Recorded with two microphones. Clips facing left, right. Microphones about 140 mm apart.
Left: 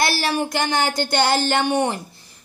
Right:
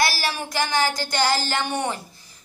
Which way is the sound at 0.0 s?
60° left (ahead or behind).